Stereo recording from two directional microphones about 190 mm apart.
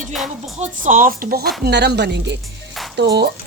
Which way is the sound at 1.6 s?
60° right (ahead or behind).